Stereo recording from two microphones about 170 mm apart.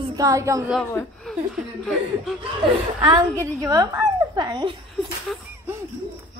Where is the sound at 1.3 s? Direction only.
5° left (ahead or behind).